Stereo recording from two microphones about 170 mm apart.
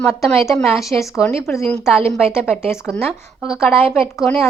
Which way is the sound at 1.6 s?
5° left (ahead or behind).